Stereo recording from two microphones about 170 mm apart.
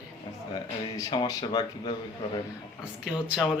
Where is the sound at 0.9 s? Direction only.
25° left (ahead or behind).